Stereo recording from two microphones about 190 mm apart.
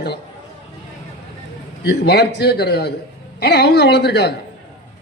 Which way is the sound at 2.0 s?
60° left (ahead or behind).